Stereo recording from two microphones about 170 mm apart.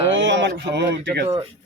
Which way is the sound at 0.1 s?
90° right.